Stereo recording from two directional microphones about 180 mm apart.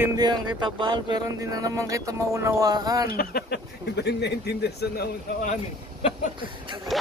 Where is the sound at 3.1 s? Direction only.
60° left (ahead or behind).